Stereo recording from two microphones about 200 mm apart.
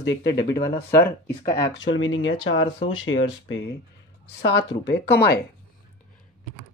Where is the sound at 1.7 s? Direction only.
70° left (ahead or behind); by 5.4 s 55° left (ahead or behind).